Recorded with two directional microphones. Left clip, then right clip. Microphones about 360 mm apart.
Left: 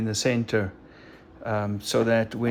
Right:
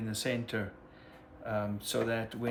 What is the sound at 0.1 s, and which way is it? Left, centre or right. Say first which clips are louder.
Speech: left 10 dB; centre.